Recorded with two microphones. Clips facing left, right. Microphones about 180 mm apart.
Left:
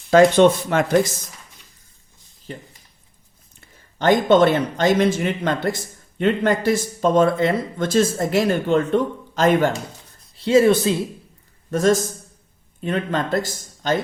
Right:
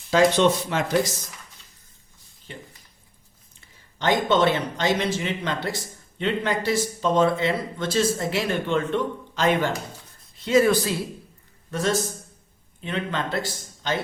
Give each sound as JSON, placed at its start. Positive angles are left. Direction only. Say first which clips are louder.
{"t": 0.1, "sound": "speech", "louder": "left 6 dB", "side_deg": 55}
{"t": 2.5, "sound": "speech", "louder": "left 6 dB", "side_deg": 40}
{"t": 3.9, "sound": "speech", "louder": "left 6 dB", "side_deg": 50}
{"t": 10.3, "sound": "a woman's voice", "louder": "left 4 dB", "side_deg": 30}
{"t": 11.7, "sound": "speech", "louder": "left 7 dB", "side_deg": 45}